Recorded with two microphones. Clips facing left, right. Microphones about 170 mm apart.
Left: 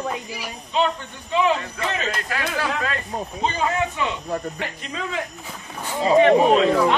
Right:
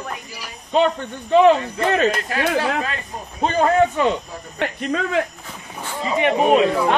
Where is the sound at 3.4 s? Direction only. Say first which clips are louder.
Right 8 dB; 50° right (ahead or behind).